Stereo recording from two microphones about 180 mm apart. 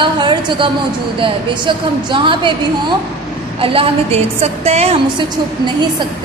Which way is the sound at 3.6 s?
35° right (ahead or behind).